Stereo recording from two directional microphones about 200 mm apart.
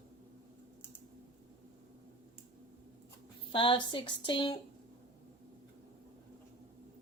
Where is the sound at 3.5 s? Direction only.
25° left (ahead or behind).